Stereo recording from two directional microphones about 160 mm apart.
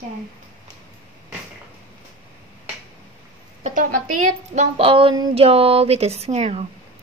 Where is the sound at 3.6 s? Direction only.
55° right (ahead or behind).